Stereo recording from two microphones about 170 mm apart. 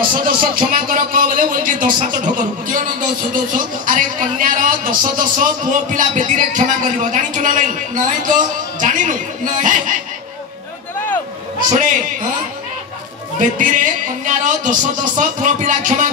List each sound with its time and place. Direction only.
0.1 s speech: 55° right (ahead or behind)
13.4 s speech: 50° right (ahead or behind)